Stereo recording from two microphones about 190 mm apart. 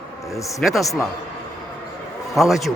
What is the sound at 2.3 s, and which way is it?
Speech, centre (ahead or behind).